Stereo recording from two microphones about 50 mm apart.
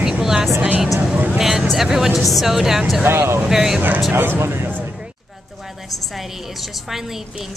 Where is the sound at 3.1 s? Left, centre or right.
Right.